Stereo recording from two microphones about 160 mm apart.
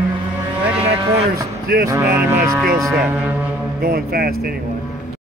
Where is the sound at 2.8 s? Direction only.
Centre (ahead or behind).